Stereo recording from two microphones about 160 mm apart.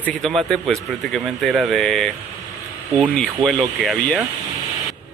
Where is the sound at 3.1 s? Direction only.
5° left (ahead or behind).